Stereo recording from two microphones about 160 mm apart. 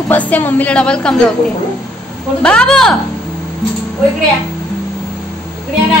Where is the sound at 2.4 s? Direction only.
5° left (ahead or behind).